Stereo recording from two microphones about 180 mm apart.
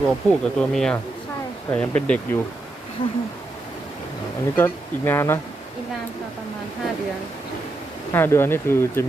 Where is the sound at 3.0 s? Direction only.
30° left (ahead or behind).